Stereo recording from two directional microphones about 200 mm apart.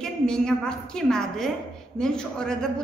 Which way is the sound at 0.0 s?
5° left (ahead or behind).